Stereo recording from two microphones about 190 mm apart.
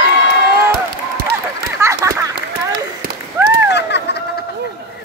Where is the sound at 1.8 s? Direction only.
15° right (ahead or behind).